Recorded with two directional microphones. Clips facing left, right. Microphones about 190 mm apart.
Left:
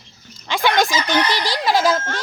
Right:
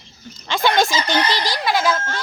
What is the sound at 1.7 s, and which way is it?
Speech, 35° left (ahead or behind).